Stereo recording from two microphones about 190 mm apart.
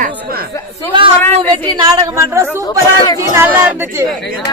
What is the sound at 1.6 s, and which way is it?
A woman's voice, 20° right (ahead or behind).